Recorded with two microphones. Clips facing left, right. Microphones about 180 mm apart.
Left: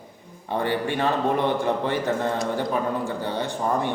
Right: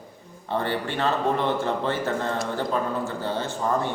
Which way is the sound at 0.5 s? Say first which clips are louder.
Left 2 dB; 15° left (ahead or behind).